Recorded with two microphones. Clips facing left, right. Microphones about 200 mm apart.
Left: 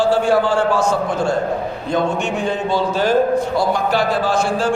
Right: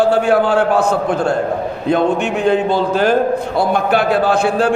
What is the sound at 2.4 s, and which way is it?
A man's voice, 60° right (ahead or behind).